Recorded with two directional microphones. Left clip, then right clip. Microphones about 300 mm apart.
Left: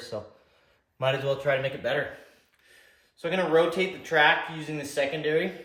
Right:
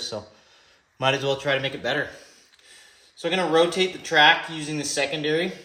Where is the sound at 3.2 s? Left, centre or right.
Right.